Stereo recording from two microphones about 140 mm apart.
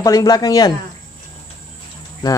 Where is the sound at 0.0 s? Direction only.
25° left (ahead or behind).